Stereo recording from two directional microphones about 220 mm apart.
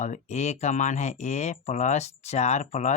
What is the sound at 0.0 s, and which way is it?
Speech, 35° left (ahead or behind).